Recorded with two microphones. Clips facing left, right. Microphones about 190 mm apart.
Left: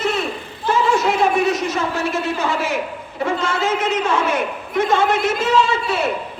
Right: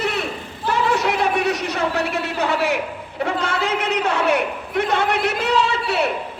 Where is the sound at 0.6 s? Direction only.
65° right (ahead or behind).